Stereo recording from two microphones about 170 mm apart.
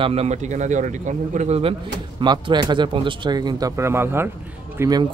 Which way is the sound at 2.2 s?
25° right (ahead or behind).